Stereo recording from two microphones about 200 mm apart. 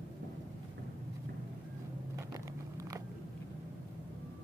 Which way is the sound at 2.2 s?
15° right (ahead or behind).